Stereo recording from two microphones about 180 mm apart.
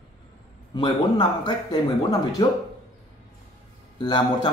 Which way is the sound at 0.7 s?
25° left (ahead or behind).